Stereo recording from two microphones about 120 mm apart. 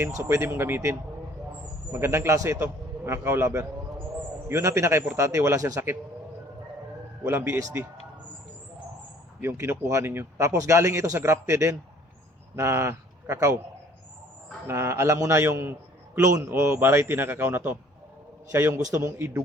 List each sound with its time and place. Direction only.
0.2 s speech: 25° right (ahead or behind)
7.3 s speech: 20° right (ahead or behind)
9.4 s speech: 20° right (ahead or behind)
14.7 s speech: 20° right (ahead or behind)